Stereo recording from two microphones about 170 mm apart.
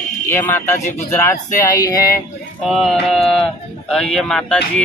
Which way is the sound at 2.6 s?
Centre (ahead or behind).